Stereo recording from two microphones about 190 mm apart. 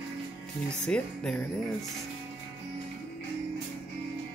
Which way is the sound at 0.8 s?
5° left (ahead or behind).